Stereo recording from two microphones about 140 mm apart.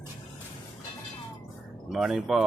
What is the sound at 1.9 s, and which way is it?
Speech, 5° right (ahead or behind).